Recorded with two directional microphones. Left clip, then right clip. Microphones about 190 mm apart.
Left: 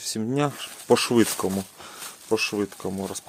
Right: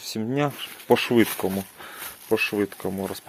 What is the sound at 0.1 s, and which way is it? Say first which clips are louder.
Speech: even; 15° left (ahead or behind).